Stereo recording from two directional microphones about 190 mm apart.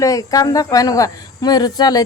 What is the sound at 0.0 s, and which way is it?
Speech, 15° left (ahead or behind).